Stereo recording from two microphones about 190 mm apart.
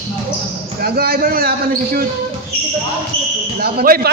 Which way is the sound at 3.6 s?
50° right (ahead or behind).